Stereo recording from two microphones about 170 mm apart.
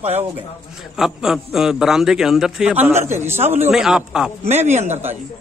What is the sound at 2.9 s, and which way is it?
Speech, 40° right (ahead or behind).